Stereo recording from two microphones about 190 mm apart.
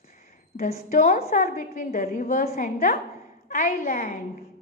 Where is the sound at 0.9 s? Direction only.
45° left (ahead or behind).